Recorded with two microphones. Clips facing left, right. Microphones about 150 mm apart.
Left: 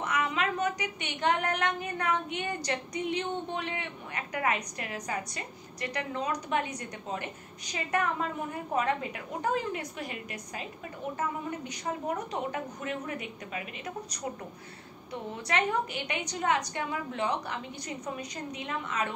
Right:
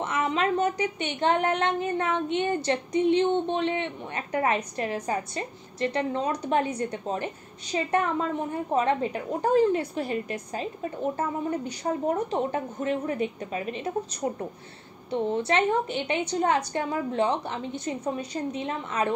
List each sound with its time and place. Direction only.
0.0 s a woman's voice: 30° right (ahead or behind)